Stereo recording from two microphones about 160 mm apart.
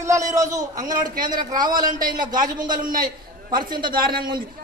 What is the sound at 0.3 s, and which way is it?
Speech, 20° right (ahead or behind).